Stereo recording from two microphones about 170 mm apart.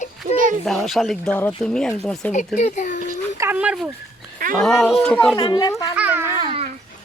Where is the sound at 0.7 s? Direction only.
Centre (ahead or behind).